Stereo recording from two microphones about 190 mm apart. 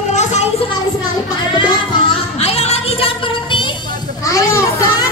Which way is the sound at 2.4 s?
35° left (ahead or behind).